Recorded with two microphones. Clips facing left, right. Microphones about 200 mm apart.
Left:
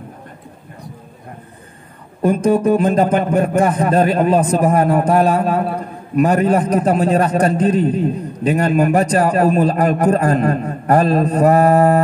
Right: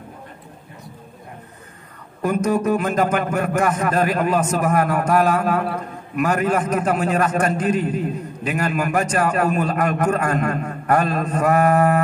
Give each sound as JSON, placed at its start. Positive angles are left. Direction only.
{"t": 2.2, "sound": "a man's voice", "side_deg": 30}